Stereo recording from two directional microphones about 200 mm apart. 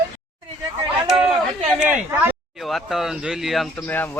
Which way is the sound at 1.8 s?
5° right (ahead or behind).